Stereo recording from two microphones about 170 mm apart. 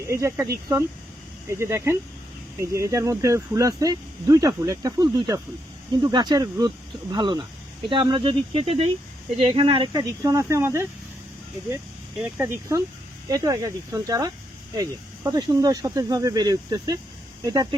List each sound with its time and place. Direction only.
0.1 s speech: 15° right (ahead or behind)
13.2 s speech: 20° right (ahead or behind)